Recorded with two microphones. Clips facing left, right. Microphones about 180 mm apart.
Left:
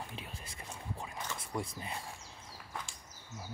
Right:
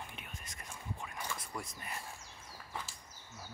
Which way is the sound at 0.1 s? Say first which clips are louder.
Left 4 dB; 30° left (ahead or behind).